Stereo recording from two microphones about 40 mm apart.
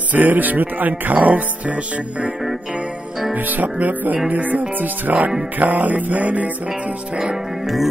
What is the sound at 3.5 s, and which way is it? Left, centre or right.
Music, right.